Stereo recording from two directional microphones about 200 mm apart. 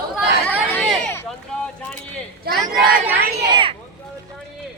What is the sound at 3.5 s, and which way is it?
Speech, 25° right (ahead or behind).